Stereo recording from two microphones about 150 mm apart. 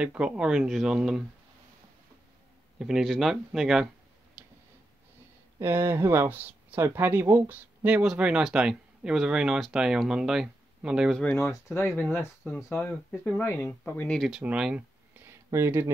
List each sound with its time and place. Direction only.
0.0 s speech: 5° right (ahead or behind)
2.8 s speech: centre (ahead or behind)
4.4 s tick-tock: 10° right (ahead or behind)
5.6 s speech: 15° right (ahead or behind)
11.2 s speech: 15° left (ahead or behind)
14.4 s a sound: 5° right (ahead or behind)
15.2 s a sound: 15° right (ahead or behind)